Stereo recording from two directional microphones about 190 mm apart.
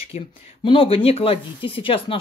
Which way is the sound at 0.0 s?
30° left (ahead or behind).